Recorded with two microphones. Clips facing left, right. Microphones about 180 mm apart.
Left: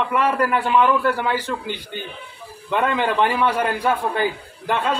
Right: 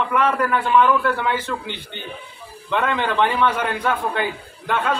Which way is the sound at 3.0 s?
5° left (ahead or behind).